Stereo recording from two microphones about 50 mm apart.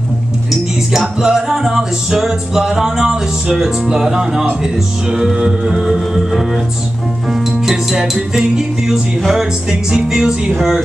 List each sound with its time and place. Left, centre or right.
0.5 s music: centre